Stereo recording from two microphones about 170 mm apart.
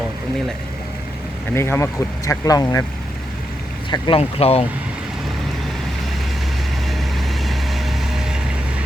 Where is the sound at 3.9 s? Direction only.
30° left (ahead or behind).